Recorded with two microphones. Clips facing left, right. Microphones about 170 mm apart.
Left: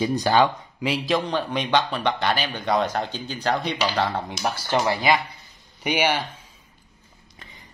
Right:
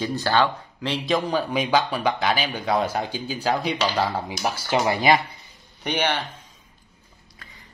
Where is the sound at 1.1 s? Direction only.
5° right (ahead or behind).